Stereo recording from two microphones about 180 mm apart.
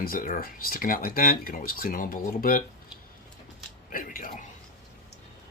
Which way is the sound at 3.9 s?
50° left (ahead or behind).